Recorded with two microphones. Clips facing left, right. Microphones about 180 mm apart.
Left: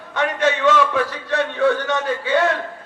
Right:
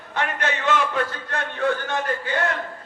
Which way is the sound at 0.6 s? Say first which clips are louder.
Left 3 dB; 80° left.